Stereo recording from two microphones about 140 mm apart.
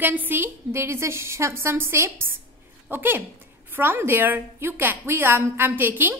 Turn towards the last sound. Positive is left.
turn(degrees=-15)  # may be behind; listen again after turning